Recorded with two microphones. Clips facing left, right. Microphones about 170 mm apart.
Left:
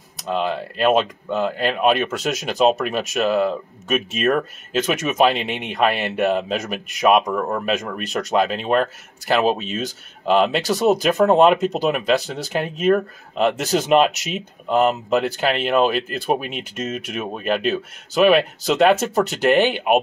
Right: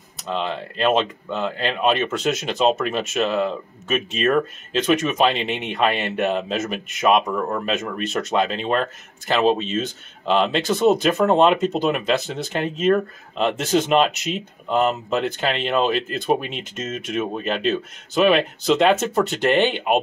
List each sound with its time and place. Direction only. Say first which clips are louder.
0.3 s speech: left 3 dB; 5° left (ahead or behind)
7.2 s speech: left 1 dB; 15° left (ahead or behind)
7.6 s speech: left 1 dB; centre (ahead or behind)